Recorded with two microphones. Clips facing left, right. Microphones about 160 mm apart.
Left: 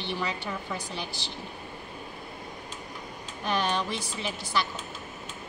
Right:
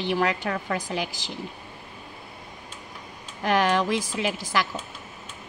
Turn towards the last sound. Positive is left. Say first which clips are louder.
# right 4 dB
turn(degrees=-90)